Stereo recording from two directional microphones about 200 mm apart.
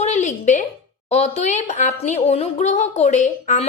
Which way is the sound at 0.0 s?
35° left (ahead or behind).